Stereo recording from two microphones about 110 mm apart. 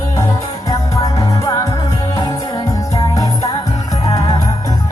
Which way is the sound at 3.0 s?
30° left (ahead or behind).